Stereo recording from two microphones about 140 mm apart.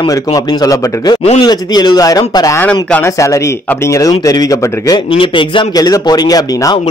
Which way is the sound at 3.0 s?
20° left (ahead or behind).